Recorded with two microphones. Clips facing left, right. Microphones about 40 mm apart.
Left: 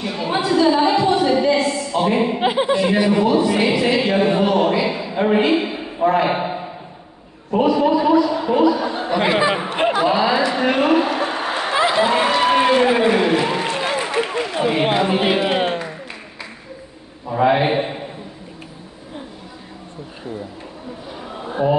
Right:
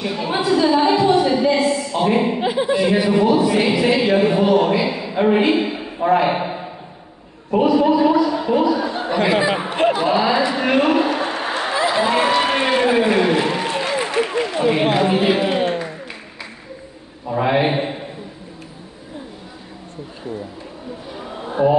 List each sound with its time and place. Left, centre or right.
0.0 s a sound: centre
2.4 s speech: left
2.7 s speech: centre
4.3 s a man's voice: centre
4.6 s a man's voice: centre
9.3 s speech: left
9.8 s a sound: centre
10.0 s speech: centre
10.5 s a sound: centre
14.0 s run: centre
14.4 s speech: centre
15.1 s speech: left
17.3 s a man's voice: centre
21.2 s a sound: centre